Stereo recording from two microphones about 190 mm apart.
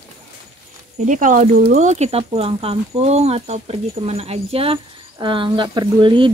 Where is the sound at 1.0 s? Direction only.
40° right (ahead or behind).